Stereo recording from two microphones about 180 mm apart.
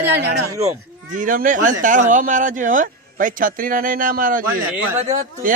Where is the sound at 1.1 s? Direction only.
45° right (ahead or behind).